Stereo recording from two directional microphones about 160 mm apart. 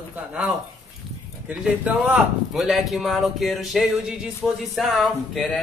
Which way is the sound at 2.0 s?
Centre (ahead or behind).